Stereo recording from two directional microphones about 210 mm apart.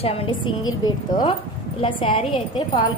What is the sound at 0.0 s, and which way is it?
A woman's voice, 25° left (ahead or behind).